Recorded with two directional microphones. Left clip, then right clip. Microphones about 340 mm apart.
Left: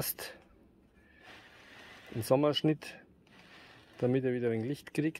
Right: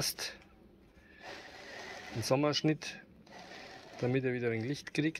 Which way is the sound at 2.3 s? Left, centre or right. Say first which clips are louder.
Left 2 dB; centre.